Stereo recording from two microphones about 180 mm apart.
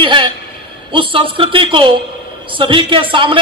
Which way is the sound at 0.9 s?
30° right (ahead or behind).